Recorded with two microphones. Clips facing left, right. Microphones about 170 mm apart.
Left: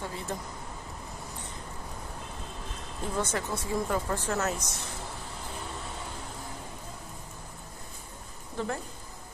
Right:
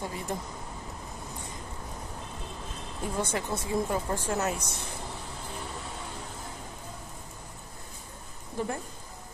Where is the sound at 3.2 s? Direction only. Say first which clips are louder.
Even; 15° right (ahead or behind).